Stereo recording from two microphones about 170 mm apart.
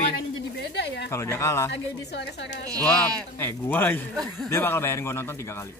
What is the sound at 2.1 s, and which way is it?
Speech, 85° left.